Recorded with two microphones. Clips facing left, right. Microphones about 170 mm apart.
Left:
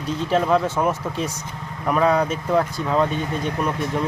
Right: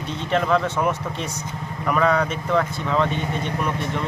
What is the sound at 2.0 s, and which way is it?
Speech, 10° left (ahead or behind).